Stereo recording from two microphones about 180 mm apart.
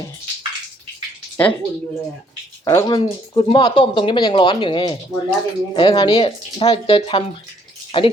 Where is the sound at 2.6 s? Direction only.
15° left (ahead or behind).